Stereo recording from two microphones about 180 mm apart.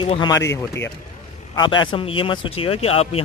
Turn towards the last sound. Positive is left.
turn(degrees=35)  # may be behind; listen again after turning